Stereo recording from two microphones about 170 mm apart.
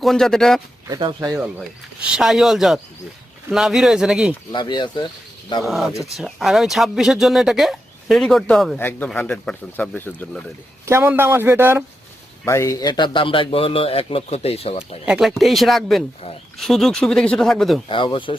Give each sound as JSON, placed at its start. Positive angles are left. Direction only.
{"t": 0.0, "sound": "speech", "side_deg": 0}
{"t": 0.9, "sound": "speech", "side_deg": -25}
{"t": 1.5, "sound": "speech", "side_deg": -5}
{"t": 4.5, "sound": "speech", "side_deg": 25}
{"t": 5.6, "sound": "speech", "side_deg": 0}
{"t": 10.8, "sound": "a man's voice", "side_deg": -15}
{"t": 12.5, "sound": "speech", "side_deg": 20}
{"t": 15.0, "sound": "speech", "side_deg": -5}
{"t": 17.8, "sound": "speech", "side_deg": 30}